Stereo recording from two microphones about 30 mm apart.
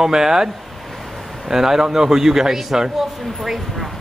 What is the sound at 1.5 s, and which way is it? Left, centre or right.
Rub, centre.